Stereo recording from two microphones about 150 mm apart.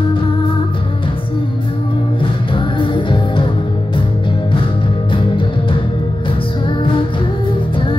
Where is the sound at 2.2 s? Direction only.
35° left (ahead or behind).